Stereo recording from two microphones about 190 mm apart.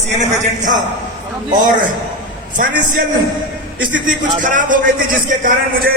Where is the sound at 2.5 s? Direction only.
45° right (ahead or behind).